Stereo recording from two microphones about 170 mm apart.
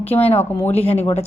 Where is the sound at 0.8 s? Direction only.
35° left (ahead or behind).